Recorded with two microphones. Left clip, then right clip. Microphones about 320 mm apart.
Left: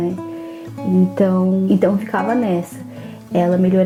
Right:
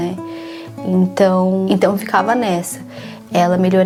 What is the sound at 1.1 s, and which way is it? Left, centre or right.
Speech, right.